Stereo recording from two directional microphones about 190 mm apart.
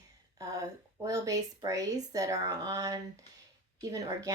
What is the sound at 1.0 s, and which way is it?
Speech, 20° right (ahead or behind).